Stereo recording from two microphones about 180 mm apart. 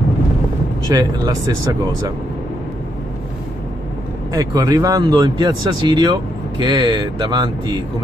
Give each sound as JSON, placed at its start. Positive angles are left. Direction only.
{"t": 0.8, "sound": "speech", "side_deg": -20}
{"t": 4.3, "sound": "speech", "side_deg": -20}